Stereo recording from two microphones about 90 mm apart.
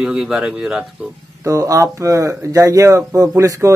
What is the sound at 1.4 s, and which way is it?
Speech, 40° right (ahead or behind).